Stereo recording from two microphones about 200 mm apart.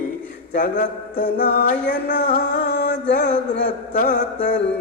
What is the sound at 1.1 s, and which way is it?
Music, 60° left (ahead or behind).